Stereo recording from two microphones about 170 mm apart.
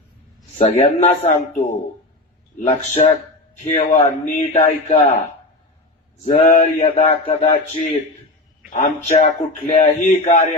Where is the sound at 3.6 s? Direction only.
45° left (ahead or behind).